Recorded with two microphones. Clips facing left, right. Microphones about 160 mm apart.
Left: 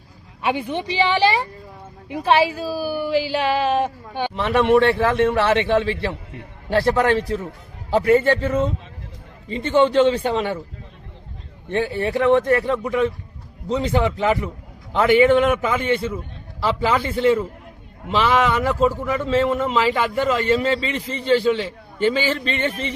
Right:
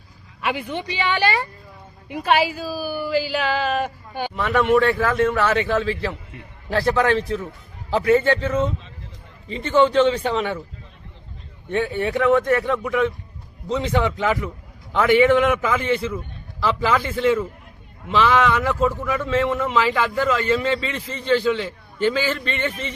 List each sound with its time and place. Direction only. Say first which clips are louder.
0.4 s a man's voice: left 3 dB; 30° left (ahead or behind)
9.6 s a man's voice: left 1 dB; 30° left (ahead or behind)
11.7 s a man's voice: left 1 dB; 30° left (ahead or behind)